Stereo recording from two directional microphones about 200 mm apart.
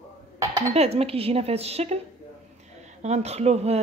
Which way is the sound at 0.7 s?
30° right (ahead or behind).